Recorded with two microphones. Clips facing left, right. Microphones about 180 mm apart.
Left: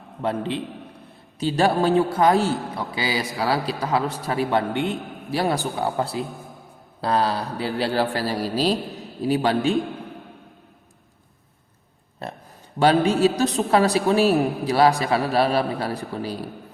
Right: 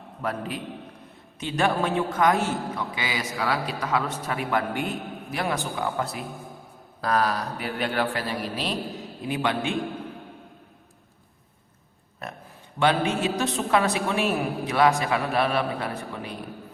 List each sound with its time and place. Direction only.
0.2 s a man's voice: 25° left (ahead or behind)
12.2 s a sound: 30° left (ahead or behind)
12.8 s a man's voice: 35° left (ahead or behind)